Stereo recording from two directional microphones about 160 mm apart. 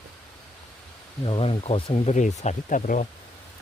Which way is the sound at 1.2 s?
35° left (ahead or behind).